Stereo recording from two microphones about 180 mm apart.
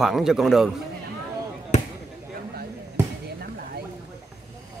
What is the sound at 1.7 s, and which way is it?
Basketball bounce, 40° left (ahead or behind).